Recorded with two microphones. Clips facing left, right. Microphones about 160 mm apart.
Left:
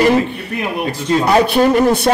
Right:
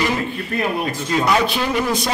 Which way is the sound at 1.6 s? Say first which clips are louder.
Left 9 dB; 40° left (ahead or behind).